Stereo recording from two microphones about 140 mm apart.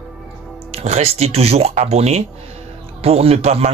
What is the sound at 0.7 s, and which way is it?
A man's voice, 50° right (ahead or behind).